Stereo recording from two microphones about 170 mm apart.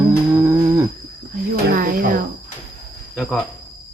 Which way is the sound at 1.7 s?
55° right (ahead or behind).